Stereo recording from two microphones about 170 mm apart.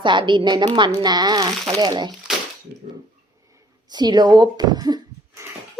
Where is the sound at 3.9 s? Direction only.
25° right (ahead or behind).